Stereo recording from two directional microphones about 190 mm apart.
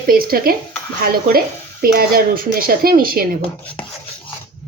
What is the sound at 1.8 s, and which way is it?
Speech, 50° right (ahead or behind).